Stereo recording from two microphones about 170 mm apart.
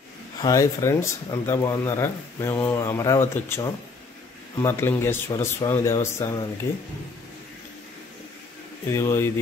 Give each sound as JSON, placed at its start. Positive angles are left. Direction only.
{"t": 0.4, "sound": "speech", "side_deg": 20}
{"t": 8.9, "sound": "speech", "side_deg": 15}